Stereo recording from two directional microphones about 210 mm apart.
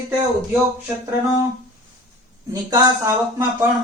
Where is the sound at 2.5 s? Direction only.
15° right (ahead or behind).